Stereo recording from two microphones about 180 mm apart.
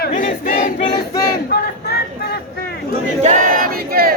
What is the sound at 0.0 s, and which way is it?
Choir, 50° left (ahead or behind).